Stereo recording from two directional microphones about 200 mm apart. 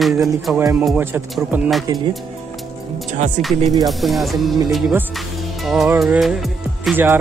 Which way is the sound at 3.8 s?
Centre (ahead or behind).